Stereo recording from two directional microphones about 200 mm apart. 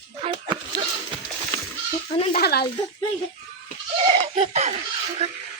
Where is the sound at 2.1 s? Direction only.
30° left (ahead or behind).